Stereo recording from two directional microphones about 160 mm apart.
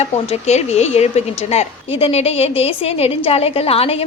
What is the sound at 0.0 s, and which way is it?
A woman's voice, 40° left (ahead or behind).